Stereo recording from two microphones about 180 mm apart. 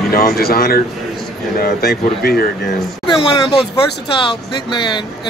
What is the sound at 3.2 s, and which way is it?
Speech, 25° left (ahead or behind).